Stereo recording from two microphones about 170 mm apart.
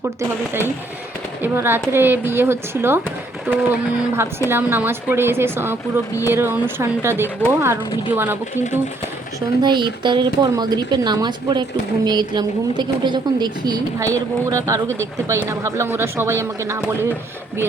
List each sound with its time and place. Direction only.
1.4 s speech: 15° right (ahead or behind)
9.6 s a woman's voice: 25° right (ahead or behind)